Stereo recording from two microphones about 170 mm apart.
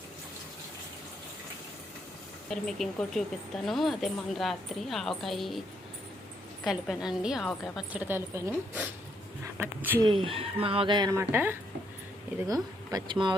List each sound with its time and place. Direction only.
2.5 s speech: 5° left (ahead or behind)
6.7 s speech: centre (ahead or behind)
10.0 s speech: 30° right (ahead or behind)